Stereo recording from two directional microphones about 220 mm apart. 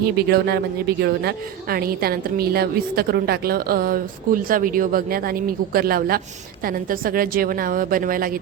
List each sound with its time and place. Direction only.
0.0 s a woman's voice: 45° right (ahead or behind)